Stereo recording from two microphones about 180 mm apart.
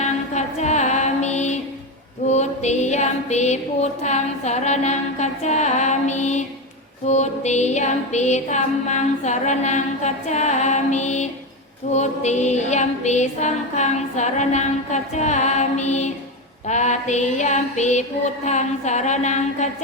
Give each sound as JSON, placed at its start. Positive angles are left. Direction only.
{"t": 0.0, "sound": "music", "side_deg": 40}